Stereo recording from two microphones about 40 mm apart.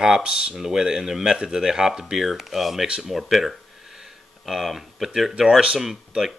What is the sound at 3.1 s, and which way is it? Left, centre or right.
Speech, centre.